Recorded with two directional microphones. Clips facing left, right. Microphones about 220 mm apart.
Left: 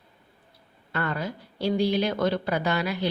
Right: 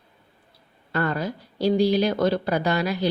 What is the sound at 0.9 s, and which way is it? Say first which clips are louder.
A woman's voice: right 4 dB; 40° right (ahead or behind).